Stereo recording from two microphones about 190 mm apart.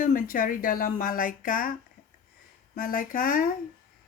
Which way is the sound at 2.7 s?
50° left (ahead or behind).